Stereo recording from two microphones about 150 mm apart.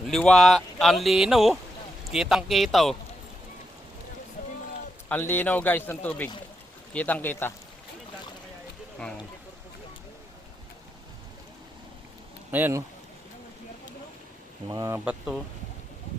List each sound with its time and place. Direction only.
0.1 s speech: 5° left (ahead or behind)
5.0 s a man's voice: 10° left (ahead or behind)
12.5 s speech: 15° right (ahead or behind)
14.7 s speech: 25° right (ahead or behind)
14.9 s speech: 10° right (ahead or behind)